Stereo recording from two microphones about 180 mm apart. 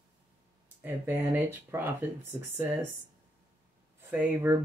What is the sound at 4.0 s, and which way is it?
Speech, 10° right (ahead or behind).